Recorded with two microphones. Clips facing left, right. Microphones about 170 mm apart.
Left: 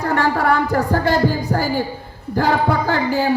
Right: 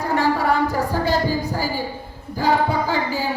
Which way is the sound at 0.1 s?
60° left (ahead or behind).